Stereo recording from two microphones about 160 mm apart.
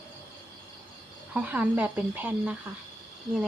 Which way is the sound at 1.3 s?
10° right (ahead or behind).